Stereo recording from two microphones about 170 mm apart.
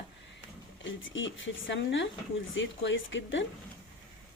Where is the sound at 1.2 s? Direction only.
90° left.